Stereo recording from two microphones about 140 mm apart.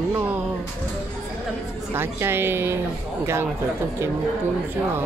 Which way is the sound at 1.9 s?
15° right (ahead or behind).